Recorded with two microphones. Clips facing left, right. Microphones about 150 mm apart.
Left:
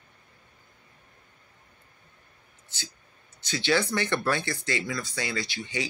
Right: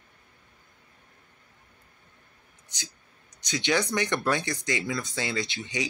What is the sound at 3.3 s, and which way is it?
Speech, 15° right (ahead or behind).